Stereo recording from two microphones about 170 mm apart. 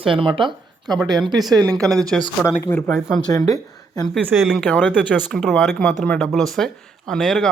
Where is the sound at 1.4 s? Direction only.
Centre (ahead or behind); by 4.0 s 20° left (ahead or behind).